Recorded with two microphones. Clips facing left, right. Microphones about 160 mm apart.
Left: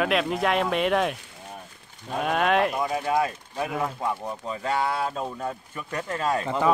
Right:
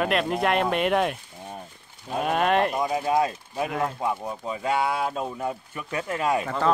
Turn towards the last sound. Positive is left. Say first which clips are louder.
# right 1 dB
turn(degrees=-10)  # may be behind; listen again after turning